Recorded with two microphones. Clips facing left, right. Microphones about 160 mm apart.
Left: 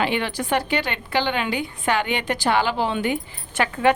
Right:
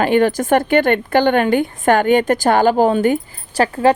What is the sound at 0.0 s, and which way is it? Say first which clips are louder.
A woman's voice: right 9 dB; 45° right (ahead or behind).